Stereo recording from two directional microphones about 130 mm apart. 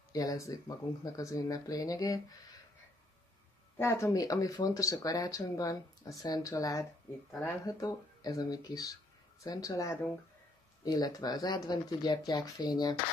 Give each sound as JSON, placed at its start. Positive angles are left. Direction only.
{"t": 0.1, "sound": "speech", "side_deg": 30}
{"t": 3.7, "sound": "speech", "side_deg": 20}